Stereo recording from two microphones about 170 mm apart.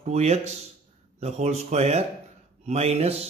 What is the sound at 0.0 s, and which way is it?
Speech, 40° right (ahead or behind).